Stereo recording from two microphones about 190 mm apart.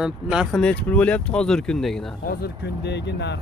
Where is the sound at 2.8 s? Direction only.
65° left (ahead or behind).